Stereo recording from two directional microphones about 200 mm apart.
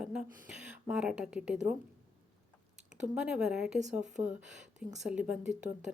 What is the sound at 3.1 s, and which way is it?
Speech, 5° right (ahead or behind).